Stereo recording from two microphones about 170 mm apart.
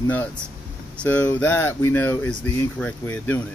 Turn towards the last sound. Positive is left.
turn(degrees=10)  # may be behind; listen again after turning